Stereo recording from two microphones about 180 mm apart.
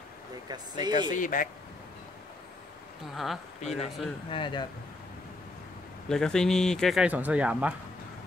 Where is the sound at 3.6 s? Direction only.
35° left (ahead or behind).